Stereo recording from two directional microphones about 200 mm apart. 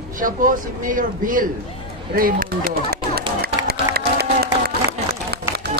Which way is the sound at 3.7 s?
50° right (ahead or behind).